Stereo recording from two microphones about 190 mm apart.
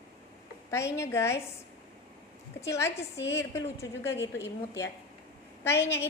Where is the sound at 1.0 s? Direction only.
15° left (ahead or behind).